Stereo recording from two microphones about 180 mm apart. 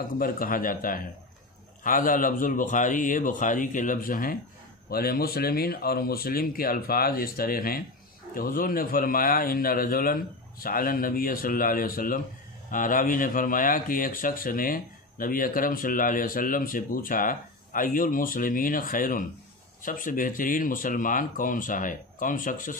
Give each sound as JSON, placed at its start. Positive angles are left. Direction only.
{"t": 0.2, "sound": "speech", "side_deg": 50}